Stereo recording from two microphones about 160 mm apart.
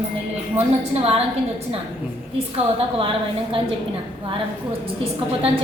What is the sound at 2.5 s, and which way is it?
A woman's voice, 35° right (ahead or behind).